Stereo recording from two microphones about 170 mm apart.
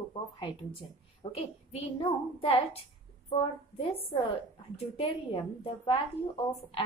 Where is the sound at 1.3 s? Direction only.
35° left (ahead or behind).